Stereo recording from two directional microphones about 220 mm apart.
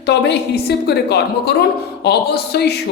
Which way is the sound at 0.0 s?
50° left (ahead or behind).